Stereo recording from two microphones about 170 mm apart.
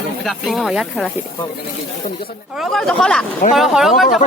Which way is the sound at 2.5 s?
Centre (ahead or behind).